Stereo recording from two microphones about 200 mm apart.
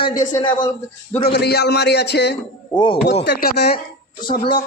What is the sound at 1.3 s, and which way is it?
Speech, 55° left (ahead or behind).